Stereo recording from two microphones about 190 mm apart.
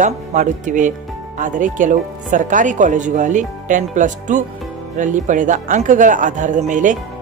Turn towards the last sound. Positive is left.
turn(degrees=-40)  # may be behind; listen again after turning